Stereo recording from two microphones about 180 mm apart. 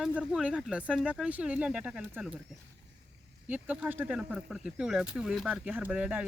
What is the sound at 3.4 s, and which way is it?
Speech, 10° right (ahead or behind).